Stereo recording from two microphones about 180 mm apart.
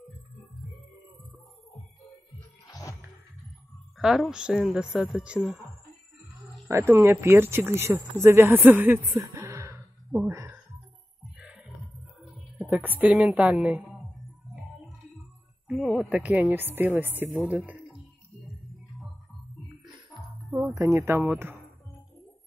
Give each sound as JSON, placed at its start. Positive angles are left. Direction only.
{"t": 2.6, "sound": "music", "side_deg": 20}
{"t": 4.0, "sound": "a woman's voice", "side_deg": 0}
{"t": 6.7, "sound": "speech", "side_deg": -15}
{"t": 10.2, "sound": "a sound", "side_deg": -10}
{"t": 11.3, "sound": "music", "side_deg": -5}
{"t": 12.5, "sound": "a woman's voice", "side_deg": -5}
{"t": 15.7, "sound": "speech", "side_deg": 0}
{"t": 20.5, "sound": "speech", "side_deg": -15}